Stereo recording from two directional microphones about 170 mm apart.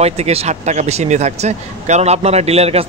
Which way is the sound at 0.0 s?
40° right (ahead or behind).